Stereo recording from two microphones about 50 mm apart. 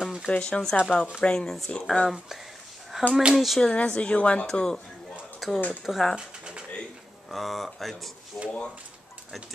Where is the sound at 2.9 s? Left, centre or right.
Centre.